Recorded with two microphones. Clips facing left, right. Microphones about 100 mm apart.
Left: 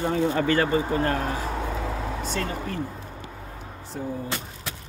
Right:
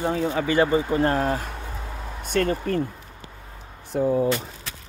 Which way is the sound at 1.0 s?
35° right (ahead or behind).